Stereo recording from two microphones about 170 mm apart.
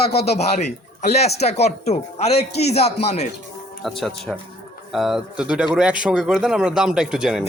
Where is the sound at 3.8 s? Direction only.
Centre (ahead or behind).